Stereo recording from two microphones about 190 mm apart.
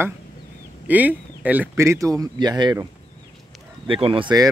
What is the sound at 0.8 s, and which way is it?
Speech, 10° right (ahead or behind).